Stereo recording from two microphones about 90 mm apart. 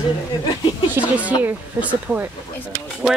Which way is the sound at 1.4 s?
20° right (ahead or behind).